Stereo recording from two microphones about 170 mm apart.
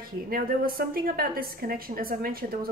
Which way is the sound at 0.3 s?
60° right (ahead or behind).